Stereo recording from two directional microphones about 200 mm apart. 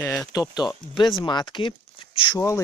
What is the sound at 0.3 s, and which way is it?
Speech, 20° left (ahead or behind).